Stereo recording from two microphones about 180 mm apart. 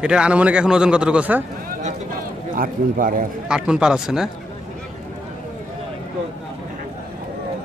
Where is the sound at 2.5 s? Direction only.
50° right (ahead or behind).